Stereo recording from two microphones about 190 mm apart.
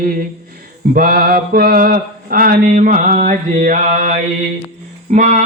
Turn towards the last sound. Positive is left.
turn(degrees=-40)  # may be behind; listen again after turning